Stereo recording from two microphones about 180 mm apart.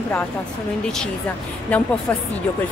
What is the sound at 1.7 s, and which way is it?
Speech, 5° left (ahead or behind).